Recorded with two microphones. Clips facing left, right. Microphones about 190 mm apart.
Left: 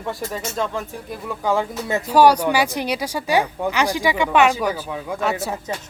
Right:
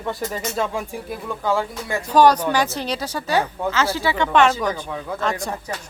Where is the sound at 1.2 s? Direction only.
15° left (ahead or behind).